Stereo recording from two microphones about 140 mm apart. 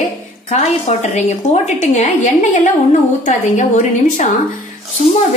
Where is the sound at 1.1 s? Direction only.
55° left (ahead or behind).